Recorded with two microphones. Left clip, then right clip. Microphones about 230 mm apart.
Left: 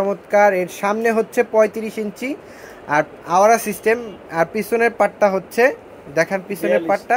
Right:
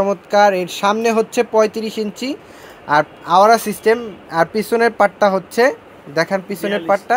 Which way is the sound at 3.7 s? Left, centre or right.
Right.